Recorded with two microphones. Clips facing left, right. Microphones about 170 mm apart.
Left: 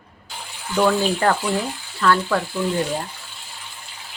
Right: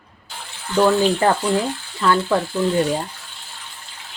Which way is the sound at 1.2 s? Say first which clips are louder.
Right 2 dB; 25° right (ahead or behind).